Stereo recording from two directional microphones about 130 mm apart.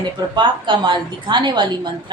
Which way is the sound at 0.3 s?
35° right (ahead or behind).